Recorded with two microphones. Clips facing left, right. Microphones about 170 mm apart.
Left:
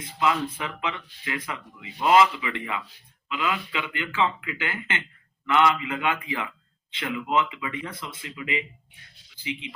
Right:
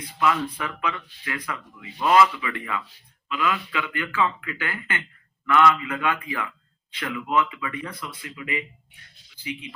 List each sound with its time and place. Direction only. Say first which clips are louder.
0.0 s speech: right 1 dB; 25° left (ahead or behind)